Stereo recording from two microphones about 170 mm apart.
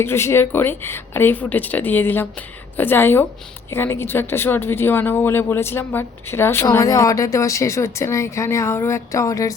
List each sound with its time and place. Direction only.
0.0 s speech: 15° left (ahead or behind)